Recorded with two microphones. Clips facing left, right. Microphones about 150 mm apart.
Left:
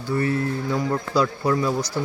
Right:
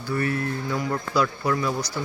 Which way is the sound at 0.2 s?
25° left (ahead or behind).